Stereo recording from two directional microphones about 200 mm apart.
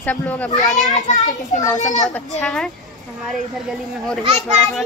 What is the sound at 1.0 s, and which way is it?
A child's voice, 35° left (ahead or behind).